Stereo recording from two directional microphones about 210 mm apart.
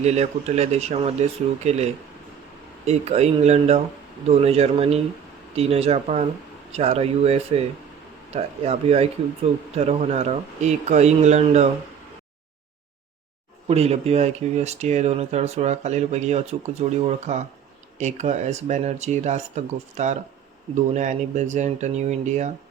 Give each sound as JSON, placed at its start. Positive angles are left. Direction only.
{"t": 0.0, "sound": "speech", "side_deg": -30}
{"t": 13.7, "sound": "speech", "side_deg": -30}